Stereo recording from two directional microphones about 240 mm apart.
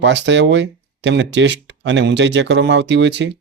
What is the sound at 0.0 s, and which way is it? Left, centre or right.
Speech, right.